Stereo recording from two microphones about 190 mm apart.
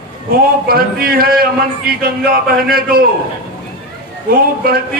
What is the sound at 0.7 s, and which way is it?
A man's voice, 50° right (ahead or behind).